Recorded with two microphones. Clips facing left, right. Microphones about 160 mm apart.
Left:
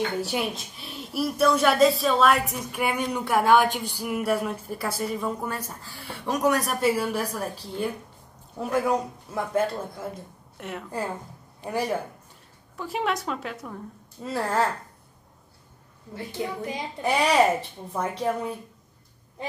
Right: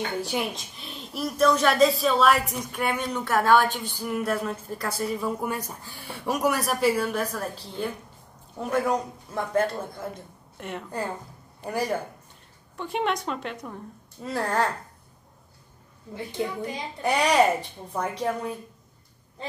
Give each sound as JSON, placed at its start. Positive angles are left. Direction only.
{"t": 0.2, "sound": "a woman's voice", "side_deg": 5}
{"t": 5.4, "sound": "a woman's voice", "side_deg": -15}
{"t": 17.0, "sound": "a woman's voice", "side_deg": 5}